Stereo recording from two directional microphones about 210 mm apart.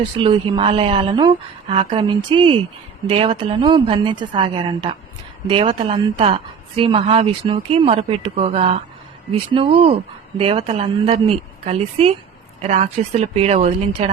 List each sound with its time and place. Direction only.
0.2 s speech: 25° right (ahead or behind)